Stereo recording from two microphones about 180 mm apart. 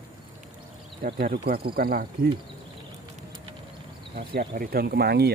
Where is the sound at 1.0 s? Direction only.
60° right (ahead or behind).